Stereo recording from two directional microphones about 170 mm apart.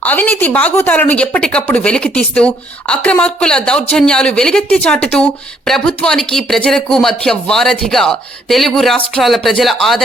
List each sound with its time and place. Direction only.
0.0 s speech: 10° left (ahead or behind)